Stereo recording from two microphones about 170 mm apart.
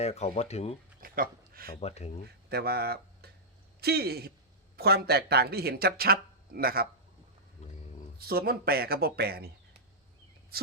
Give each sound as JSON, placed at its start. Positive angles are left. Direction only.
{"t": 0.0, "sound": "speech", "side_deg": 40}
{"t": 1.0, "sound": "speech", "side_deg": -60}
{"t": 1.8, "sound": "speech", "side_deg": 40}
{"t": 2.5, "sound": "speech", "side_deg": -70}
{"t": 7.6, "sound": "a sound", "side_deg": 40}
{"t": 8.2, "sound": "speech", "side_deg": -65}